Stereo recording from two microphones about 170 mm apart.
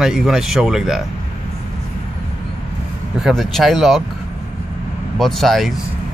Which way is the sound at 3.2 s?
Centre (ahead or behind).